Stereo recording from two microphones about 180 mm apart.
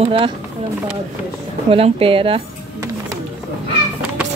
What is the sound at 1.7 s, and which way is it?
Speech, 30° right (ahead or behind).